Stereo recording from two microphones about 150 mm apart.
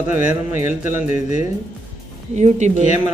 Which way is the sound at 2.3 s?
50° right (ahead or behind).